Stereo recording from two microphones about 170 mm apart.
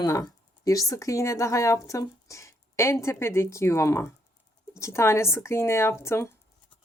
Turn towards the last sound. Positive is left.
turn(degrees=15)  # may be behind; listen again after turning